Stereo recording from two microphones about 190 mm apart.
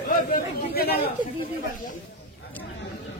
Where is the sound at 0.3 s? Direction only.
50° left (ahead or behind).